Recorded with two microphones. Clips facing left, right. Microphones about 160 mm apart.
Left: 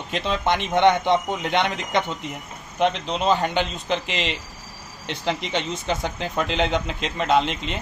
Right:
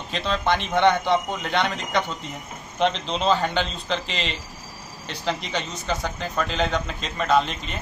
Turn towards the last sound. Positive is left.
turn(degrees=20)  # may be behind; listen again after turning